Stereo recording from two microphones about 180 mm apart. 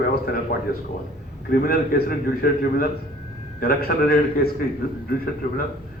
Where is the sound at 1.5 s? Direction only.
55° left (ahead or behind).